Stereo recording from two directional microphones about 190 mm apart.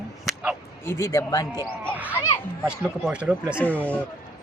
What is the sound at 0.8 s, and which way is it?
Speech, 15° left (ahead or behind).